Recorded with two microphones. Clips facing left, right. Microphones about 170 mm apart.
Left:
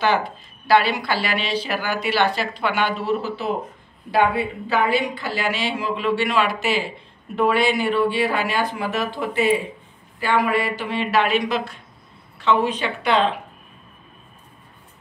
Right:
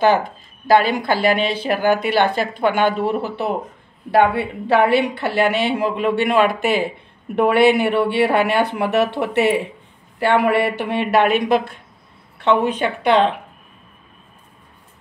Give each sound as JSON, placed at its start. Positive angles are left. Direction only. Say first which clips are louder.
{"t": 0.0, "sound": "a woman's voice", "louder": "right 5 dB", "side_deg": -45}